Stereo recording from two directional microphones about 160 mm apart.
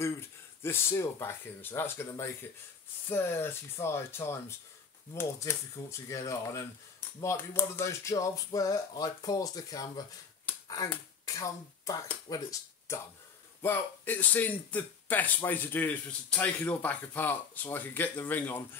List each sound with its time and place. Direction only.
0.6 s speech: 15° left (ahead or behind)
11.3 s speech: 20° left (ahead or behind)